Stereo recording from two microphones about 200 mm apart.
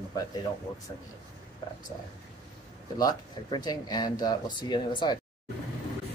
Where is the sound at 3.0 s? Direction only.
20° left (ahead or behind).